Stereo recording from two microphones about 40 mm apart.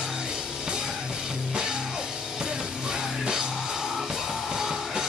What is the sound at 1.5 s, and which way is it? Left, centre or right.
Music, centre.